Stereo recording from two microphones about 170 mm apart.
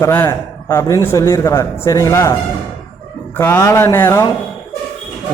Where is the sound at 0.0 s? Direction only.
15° left (ahead or behind).